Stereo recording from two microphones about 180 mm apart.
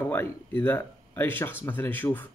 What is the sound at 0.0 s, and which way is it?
A man's voice, 10° left (ahead or behind).